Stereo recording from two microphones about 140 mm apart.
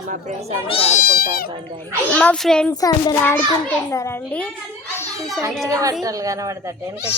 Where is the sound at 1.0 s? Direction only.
90° left.